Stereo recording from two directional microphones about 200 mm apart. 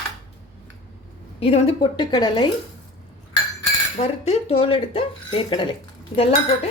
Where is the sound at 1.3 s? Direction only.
30° left (ahead or behind).